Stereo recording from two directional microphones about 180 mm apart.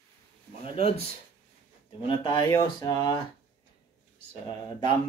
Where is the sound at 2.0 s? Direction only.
25° left (ahead or behind).